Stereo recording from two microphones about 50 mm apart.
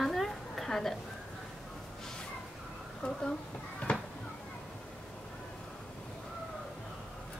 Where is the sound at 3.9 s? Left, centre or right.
Left.